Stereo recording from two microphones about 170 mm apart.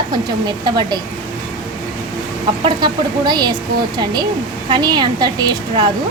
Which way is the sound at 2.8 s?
25° right (ahead or behind).